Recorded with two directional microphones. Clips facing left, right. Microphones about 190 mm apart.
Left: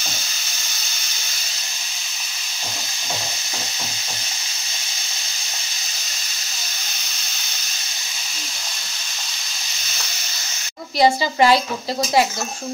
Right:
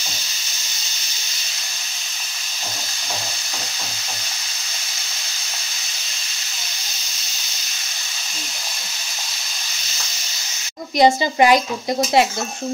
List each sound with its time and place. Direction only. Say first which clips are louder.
11.0 s a woman's voice: right 2 dB; 20° right (ahead or behind)